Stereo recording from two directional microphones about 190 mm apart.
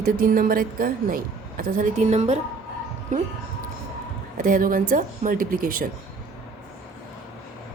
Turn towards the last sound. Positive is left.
turn(degrees=-45)  # may be behind; listen again after turning